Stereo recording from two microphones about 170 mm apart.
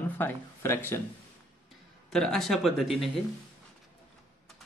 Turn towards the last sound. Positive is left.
turn(degrees=0)  # may be behind; listen again after turning